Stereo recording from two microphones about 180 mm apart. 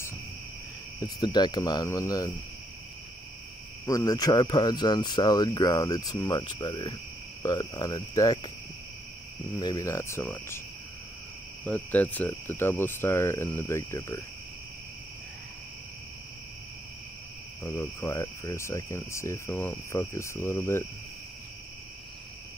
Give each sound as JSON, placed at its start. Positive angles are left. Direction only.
{"t": 0.9, "sound": "speech", "side_deg": 20}
{"t": 3.8, "sound": "speech", "side_deg": 20}
{"t": 9.6, "sound": "speech", "side_deg": 20}
{"t": 11.6, "sound": "speech", "side_deg": 10}
{"t": 17.6, "sound": "speech", "side_deg": 15}